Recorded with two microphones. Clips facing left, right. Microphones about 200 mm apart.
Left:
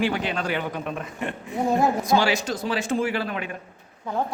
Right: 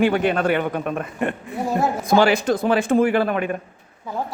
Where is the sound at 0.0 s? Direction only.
55° right (ahead or behind).